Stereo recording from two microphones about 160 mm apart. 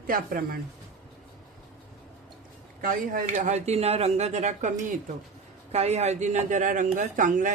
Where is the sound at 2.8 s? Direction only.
60° right (ahead or behind).